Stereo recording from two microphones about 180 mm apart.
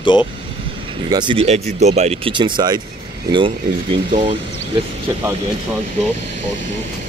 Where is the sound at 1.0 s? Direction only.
25° right (ahead or behind).